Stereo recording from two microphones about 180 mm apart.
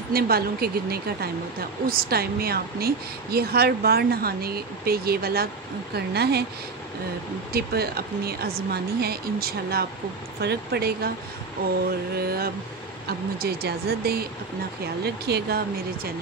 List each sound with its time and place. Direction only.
0.1 s a woman's voice: 60° right (ahead or behind)
7.5 s a woman's voice: 60° right (ahead or behind)
12.2 s a woman's voice: 60° right (ahead or behind)